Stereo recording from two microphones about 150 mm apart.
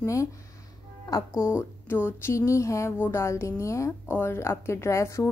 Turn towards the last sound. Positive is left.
turn(degrees=20)  # may be behind; listen again after turning